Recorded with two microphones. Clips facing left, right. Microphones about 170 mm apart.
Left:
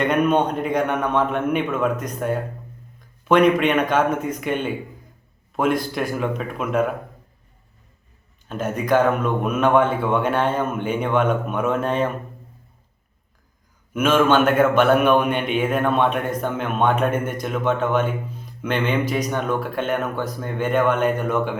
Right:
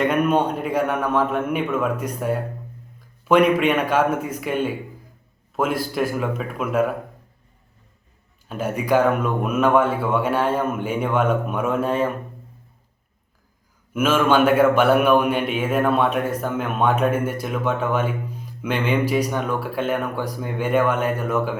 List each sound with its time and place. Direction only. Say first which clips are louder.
0.0 s a man's voice: even; 5° right (ahead or behind)
8.4 s a man's voice: even; 10° right (ahead or behind)
13.9 s a man's voice: left 1 dB; 5° right (ahead or behind)